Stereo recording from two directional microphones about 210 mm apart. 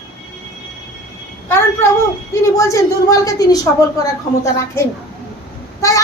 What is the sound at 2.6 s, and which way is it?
A child's voice, 15° left (ahead or behind).